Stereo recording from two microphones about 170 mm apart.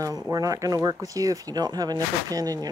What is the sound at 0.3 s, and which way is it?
Speech, 20° right (ahead or behind).